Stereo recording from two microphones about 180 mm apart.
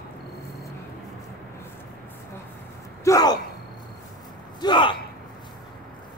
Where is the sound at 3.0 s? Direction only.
20° left (ahead or behind).